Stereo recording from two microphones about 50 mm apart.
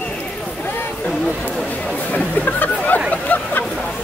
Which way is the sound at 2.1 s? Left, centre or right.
Left.